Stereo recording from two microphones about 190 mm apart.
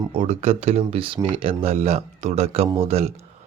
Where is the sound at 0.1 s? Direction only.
35° right (ahead or behind).